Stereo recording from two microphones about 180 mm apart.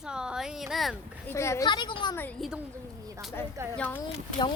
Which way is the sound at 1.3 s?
15° left (ahead or behind).